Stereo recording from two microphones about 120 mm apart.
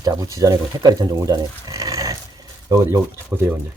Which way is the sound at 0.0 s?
30° right (ahead or behind).